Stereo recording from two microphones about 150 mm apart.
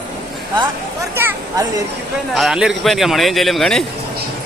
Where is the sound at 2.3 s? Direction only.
Centre (ahead or behind).